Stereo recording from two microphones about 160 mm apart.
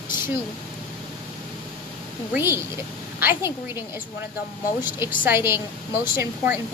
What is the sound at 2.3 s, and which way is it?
A woman's voice, 15° right (ahead or behind).